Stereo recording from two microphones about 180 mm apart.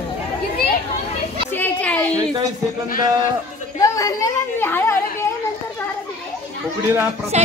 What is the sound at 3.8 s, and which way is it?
A woman's voice, 20° left (ahead or behind).